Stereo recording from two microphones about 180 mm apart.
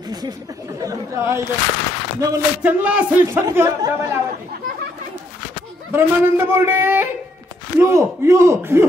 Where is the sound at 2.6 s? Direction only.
5° right (ahead or behind).